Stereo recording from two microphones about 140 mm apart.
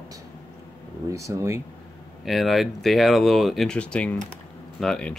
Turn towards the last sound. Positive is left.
turn(degrees=5)  # may be behind; listen again after turning